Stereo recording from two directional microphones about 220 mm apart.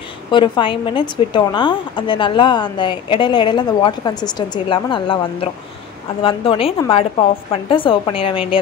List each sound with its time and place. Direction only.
0.3 s a woman's voice: 20° left (ahead or behind)